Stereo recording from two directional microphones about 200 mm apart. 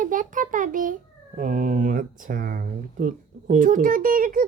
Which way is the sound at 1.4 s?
40° right (ahead or behind).